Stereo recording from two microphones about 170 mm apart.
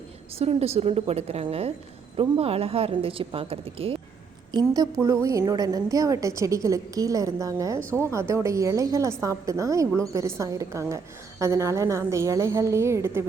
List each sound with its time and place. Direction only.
0.3 s a woman's voice: 35° right (ahead or behind)
4.5 s a woman's voice: 20° right (ahead or behind)